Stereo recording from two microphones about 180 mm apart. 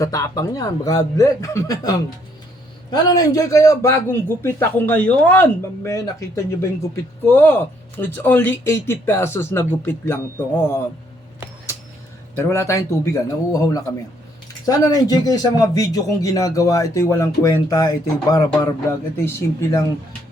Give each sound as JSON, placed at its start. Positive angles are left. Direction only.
{"t": 0.0, "sound": "a man's voice", "side_deg": 20}
{"t": 12.5, "sound": "a man's voice", "side_deg": 15}
{"t": 14.7, "sound": "a man's voice", "side_deg": 20}